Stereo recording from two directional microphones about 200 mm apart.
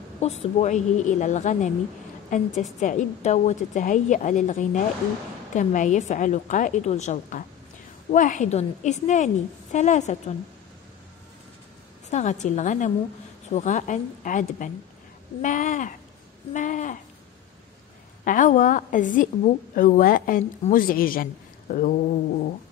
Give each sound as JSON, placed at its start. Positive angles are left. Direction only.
{"t": 0.2, "sound": "a woman's voice", "side_deg": 35}
{"t": 2.8, "sound": "a woman's voice", "side_deg": 35}
{"t": 12.1, "sound": "a woman's voice", "side_deg": 35}
{"t": 18.2, "sound": "a woman's voice", "side_deg": 40}